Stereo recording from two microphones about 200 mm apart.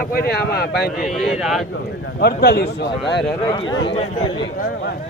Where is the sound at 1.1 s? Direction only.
Centre (ahead or behind).